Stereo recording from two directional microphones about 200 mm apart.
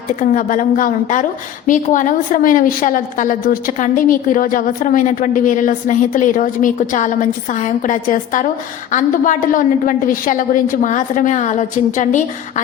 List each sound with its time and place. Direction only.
0.2 s a woman's voice: 40° left (ahead or behind)